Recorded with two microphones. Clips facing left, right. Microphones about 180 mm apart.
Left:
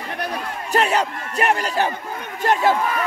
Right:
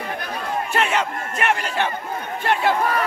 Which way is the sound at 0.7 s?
35° left (ahead or behind).